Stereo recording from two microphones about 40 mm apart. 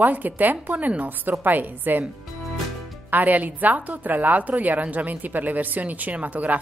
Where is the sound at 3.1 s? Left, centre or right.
Right.